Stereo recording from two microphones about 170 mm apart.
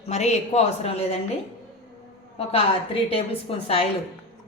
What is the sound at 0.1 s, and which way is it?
A woman's voice, 40° left (ahead or behind).